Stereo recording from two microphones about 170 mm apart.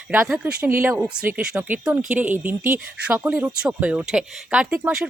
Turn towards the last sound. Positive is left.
turn(degrees=-5)  # may be behind; listen again after turning